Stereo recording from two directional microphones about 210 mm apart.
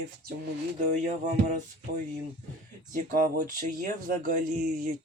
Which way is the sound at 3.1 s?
40° right (ahead or behind).